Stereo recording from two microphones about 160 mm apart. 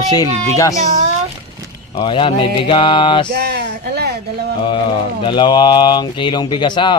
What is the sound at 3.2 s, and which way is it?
Speech, 90° right.